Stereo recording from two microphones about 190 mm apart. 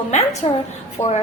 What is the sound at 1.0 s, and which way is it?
Speech, 15° left (ahead or behind).